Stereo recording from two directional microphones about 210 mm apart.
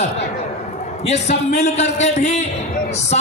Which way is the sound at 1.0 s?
35° left (ahead or behind).